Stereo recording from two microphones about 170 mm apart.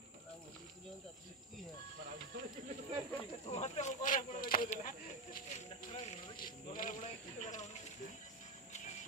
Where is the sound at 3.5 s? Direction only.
40° left (ahead or behind); by 4.6 s 55° left (ahead or behind).